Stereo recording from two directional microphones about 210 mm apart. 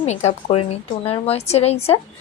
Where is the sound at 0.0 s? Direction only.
30° left (ahead or behind).